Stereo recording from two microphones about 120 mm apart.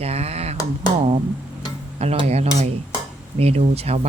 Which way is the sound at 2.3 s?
65° right (ahead or behind).